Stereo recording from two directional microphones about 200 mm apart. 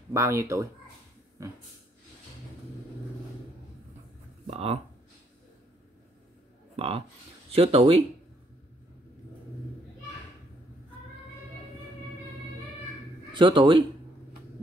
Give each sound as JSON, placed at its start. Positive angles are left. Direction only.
{"t": 0.1, "sound": "speech", "side_deg": -15}
{"t": 4.5, "sound": "speech", "side_deg": -30}
{"t": 6.8, "sound": "speech", "side_deg": -30}
{"t": 13.3, "sound": "speech", "side_deg": -25}